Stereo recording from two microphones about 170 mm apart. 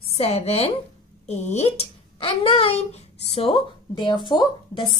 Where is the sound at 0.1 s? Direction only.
40° left (ahead or behind).